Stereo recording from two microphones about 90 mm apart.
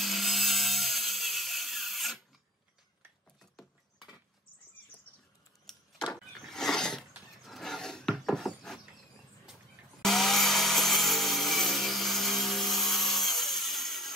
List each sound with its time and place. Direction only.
0.0 s sawing: centre (ahead or behind)
5.7 s a sound: 5° left (ahead or behind)
10.0 s wood: 5° left (ahead or behind)